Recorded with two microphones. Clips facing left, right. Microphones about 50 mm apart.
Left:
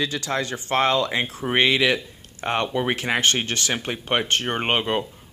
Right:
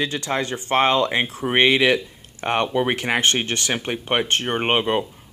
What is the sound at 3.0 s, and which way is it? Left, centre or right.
Speech, right.